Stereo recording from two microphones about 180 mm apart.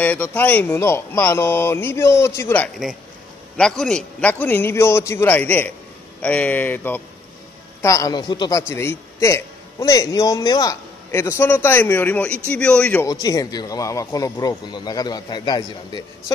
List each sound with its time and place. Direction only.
0.0 s a man's voice: 10° left (ahead or behind)
13.0 s speech: 20° left (ahead or behind)